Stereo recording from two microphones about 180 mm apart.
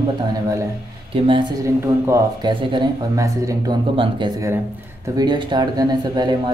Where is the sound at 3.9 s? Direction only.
30° right (ahead or behind).